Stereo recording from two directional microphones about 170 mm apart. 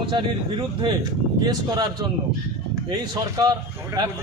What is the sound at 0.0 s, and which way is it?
Speech, 30° right (ahead or behind).